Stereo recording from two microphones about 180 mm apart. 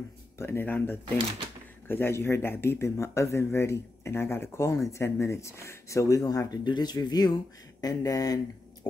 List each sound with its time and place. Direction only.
0.4 s speech: 10° left (ahead or behind)